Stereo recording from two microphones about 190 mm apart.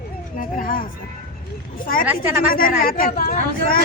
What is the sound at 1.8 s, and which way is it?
Speech, 50° left (ahead or behind).